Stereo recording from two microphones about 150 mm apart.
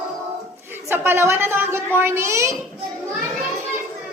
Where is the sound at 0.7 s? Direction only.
15° right (ahead or behind).